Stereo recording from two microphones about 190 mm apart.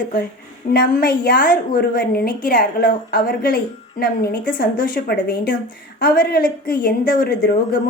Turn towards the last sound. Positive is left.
turn(degrees=50)  # may be behind; listen again after turning